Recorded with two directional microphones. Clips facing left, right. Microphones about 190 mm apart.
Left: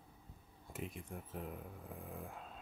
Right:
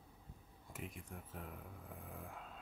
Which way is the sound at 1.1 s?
25° left (ahead or behind).